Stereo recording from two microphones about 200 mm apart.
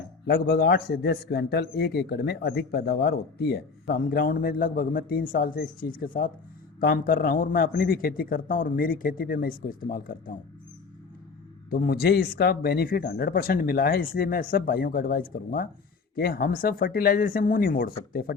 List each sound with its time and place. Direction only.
0.3 s a man's voice: 50° left (ahead or behind)
11.7 s a man's voice: 50° left (ahead or behind)